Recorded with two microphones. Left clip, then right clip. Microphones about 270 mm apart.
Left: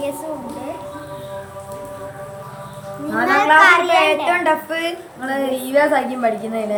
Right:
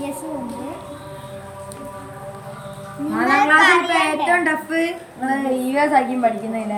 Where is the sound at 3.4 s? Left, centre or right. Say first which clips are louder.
Left 3 dB; centre.